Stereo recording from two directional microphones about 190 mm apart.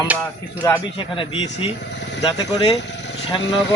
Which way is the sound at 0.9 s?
25° left (ahead or behind).